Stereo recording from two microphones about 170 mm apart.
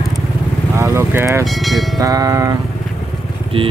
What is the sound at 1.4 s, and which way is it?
Music, centre (ahead or behind).